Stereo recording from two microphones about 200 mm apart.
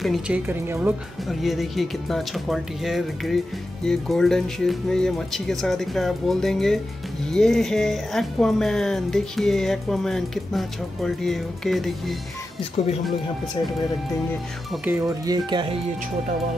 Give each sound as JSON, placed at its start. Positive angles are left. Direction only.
{"t": 0.0, "sound": "speech", "side_deg": -5}
{"t": 14.7, "sound": "speech", "side_deg": -10}